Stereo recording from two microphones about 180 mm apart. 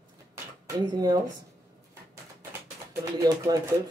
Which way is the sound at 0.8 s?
20° right (ahead or behind).